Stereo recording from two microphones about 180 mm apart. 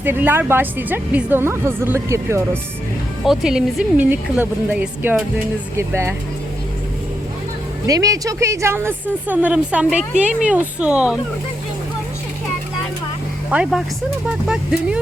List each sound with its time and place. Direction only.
0.0 s a woman's voice: 10° right (ahead or behind)
3.2 s a woman's voice: 5° right (ahead or behind)
7.9 s a woman's voice: 20° right (ahead or behind)
13.5 s speech: 5° right (ahead or behind)